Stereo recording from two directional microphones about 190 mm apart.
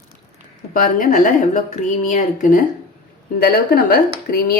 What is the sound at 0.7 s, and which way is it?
A woman's voice, 45° left (ahead or behind).